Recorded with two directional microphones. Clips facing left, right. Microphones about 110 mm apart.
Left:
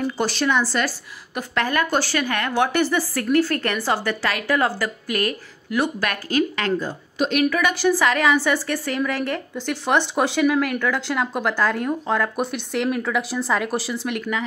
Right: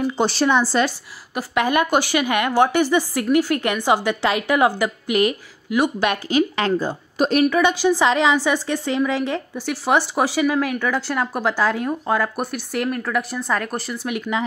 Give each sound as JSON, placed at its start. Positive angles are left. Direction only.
{"t": 0.2, "sound": "a woman's voice", "side_deg": -30}
{"t": 1.3, "sound": "speech", "side_deg": -10}
{"t": 6.5, "sound": "speech", "side_deg": -30}
{"t": 7.4, "sound": "a woman's voice", "side_deg": -25}